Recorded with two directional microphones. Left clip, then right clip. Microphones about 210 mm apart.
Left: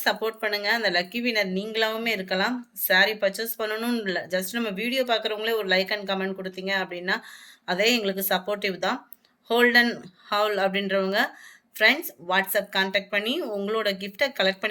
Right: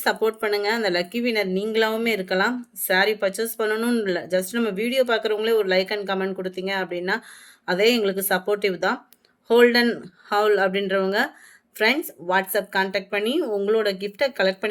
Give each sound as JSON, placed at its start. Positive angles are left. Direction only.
{"t": 0.0, "sound": "speech", "side_deg": -45}